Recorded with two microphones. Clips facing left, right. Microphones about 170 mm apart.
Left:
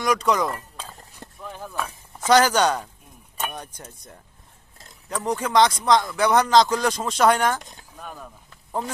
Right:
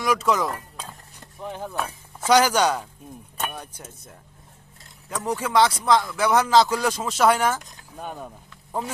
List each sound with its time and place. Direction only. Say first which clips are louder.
0.0 s speech: left 1 dB; 5° right (ahead or behind)
1.4 s a sound: right 4 dB; 20° right (ahead or behind)
1.8 s speech: right 1 dB; 10° right (ahead or behind)
7.9 s speech: right 5 dB; 25° right (ahead or behind)